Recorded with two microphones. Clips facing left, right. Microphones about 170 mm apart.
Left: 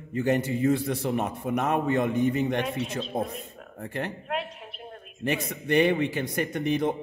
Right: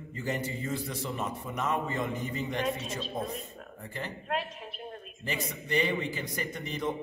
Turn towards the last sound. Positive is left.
turn(degrees=65)  # may be behind; listen again after turning